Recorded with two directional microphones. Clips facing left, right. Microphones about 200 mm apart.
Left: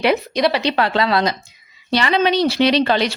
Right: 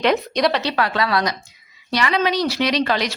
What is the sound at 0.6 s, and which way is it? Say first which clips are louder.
Speech: left 3 dB; 25° left (ahead or behind).